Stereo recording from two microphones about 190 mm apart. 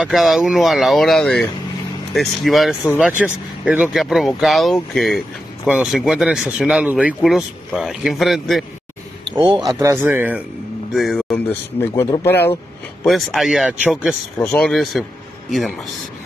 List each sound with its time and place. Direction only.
0.0 s speech: centre (ahead or behind)
9.3 s speech: 20° right (ahead or behind); by 12.5 s 10° left (ahead or behind)
13.0 s speech: centre (ahead or behind)